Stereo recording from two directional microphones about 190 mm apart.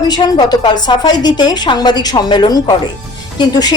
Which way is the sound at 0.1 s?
20° left (ahead or behind).